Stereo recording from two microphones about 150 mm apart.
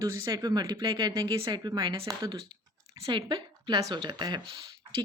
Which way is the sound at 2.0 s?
25° right (ahead or behind).